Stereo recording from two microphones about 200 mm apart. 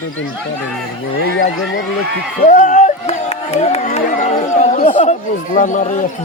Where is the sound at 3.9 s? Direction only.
35° left (ahead or behind).